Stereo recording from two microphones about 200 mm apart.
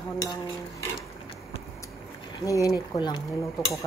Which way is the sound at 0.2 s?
20° left (ahead or behind).